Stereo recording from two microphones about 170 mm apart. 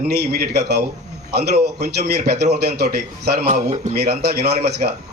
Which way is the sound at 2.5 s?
70° right (ahead or behind).